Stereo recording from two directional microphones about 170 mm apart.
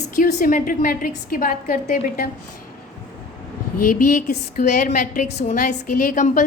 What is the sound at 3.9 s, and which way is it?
A woman's voice, 50° left (ahead or behind).